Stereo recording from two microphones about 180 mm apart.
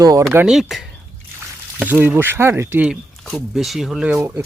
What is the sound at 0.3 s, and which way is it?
Speech, 5° right (ahead or behind).